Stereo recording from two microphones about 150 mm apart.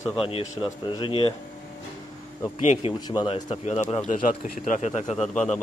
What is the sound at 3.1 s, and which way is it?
A man's voice, 30° left (ahead or behind).